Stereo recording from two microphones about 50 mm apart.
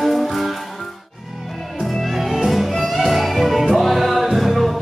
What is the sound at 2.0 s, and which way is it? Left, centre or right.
Music, centre.